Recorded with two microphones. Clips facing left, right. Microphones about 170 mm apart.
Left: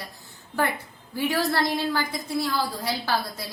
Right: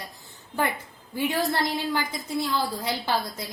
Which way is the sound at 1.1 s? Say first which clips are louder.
Left 1 dB; 20° right (ahead or behind).